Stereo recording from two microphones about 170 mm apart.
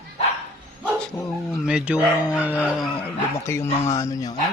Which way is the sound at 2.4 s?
10° right (ahead or behind).